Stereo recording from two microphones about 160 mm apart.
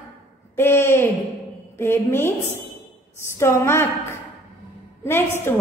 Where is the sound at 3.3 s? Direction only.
15° left (ahead or behind).